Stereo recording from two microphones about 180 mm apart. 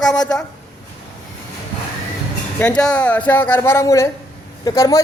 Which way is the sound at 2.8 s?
5° left (ahead or behind).